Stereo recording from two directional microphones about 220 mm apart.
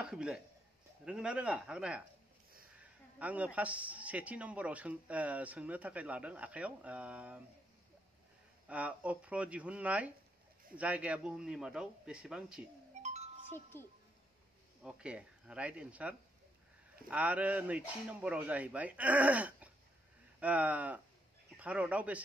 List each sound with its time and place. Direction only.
0.0 s a man's voice: 5° right (ahead or behind)
8.6 s a man's voice: 5° right (ahead or behind)
13.0 s music: 30° right (ahead or behind)
13.7 s speech: 10° left (ahead or behind)
14.8 s a man's voice: 5° right (ahead or behind)